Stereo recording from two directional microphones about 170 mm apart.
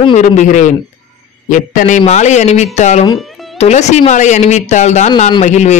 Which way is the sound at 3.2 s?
Centre (ahead or behind).